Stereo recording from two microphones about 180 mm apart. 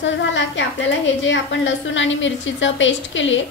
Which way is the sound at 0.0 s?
90° left.